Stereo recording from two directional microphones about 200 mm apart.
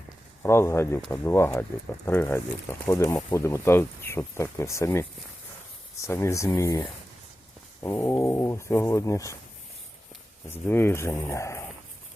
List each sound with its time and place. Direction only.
0.4 s speech: 10° left (ahead or behind)
6.1 s speech: 15° left (ahead or behind)
10.5 s speech: 10° left (ahead or behind)